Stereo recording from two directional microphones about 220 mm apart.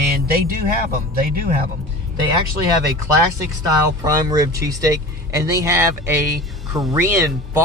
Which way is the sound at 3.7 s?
15° right (ahead or behind).